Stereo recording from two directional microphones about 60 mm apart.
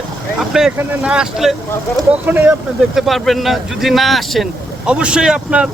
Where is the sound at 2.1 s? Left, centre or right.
Right.